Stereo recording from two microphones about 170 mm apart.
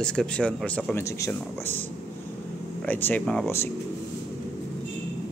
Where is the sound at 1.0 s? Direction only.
15° left (ahead or behind).